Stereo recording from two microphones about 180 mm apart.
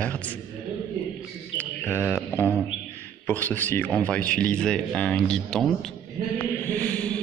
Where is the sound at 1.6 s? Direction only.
10° left (ahead or behind).